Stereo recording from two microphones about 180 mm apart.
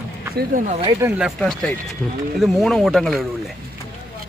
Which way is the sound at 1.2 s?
Centre (ahead or behind).